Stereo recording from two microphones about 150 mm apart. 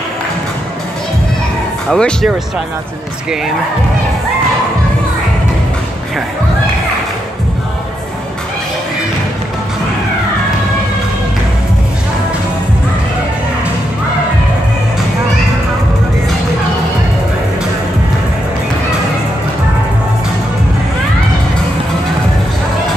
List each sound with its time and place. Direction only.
1.9 s speech: 5° left (ahead or behind)